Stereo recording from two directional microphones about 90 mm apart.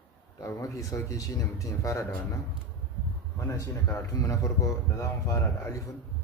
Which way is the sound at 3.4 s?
35° left (ahead or behind).